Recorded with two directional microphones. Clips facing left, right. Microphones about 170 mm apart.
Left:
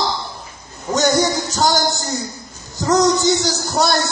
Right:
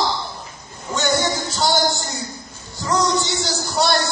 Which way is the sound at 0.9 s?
40° left (ahead or behind).